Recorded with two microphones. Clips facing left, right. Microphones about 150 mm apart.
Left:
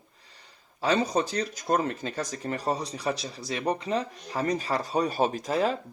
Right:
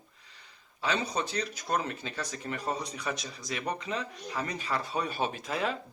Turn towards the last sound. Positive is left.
turn(degrees=35)  # may be behind; listen again after turning